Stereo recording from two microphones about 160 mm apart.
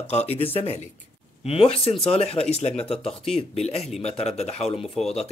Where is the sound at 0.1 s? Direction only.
40° left (ahead or behind).